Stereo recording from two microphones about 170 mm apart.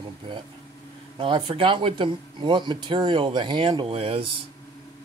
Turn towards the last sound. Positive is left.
turn(degrees=-30)  # may be behind; listen again after turning